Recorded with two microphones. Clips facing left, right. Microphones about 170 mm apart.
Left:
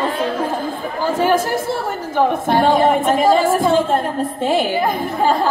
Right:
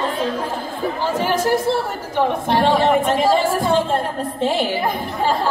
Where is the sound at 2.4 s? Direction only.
45° left (ahead or behind).